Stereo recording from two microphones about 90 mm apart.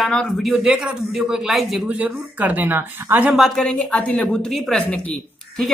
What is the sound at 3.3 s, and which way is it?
Speech, centre (ahead or behind).